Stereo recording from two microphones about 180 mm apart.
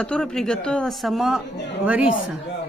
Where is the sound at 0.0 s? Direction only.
5° left (ahead or behind).